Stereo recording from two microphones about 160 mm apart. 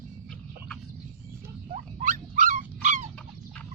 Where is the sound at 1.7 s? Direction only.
55° right (ahead or behind).